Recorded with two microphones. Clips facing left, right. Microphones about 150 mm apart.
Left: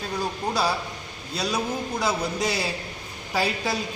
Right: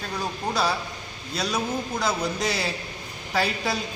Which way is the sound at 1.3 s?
5° left (ahead or behind).